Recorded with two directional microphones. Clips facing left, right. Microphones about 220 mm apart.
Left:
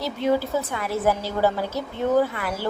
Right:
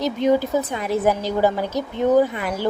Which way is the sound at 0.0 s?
20° right (ahead or behind).